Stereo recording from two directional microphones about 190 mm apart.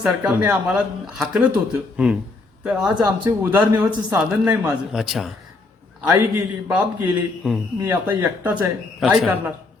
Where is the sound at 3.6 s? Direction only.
25° right (ahead or behind).